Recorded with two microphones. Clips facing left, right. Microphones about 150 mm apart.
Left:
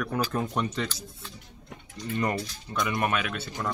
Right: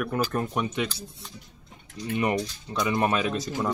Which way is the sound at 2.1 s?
15° right (ahead or behind).